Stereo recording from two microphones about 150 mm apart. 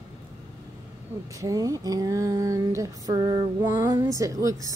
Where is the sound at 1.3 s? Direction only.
20° right (ahead or behind).